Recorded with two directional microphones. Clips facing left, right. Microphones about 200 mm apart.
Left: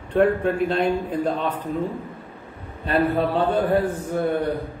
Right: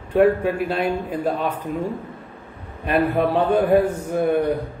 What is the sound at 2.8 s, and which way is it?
A man's voice, 15° right (ahead or behind).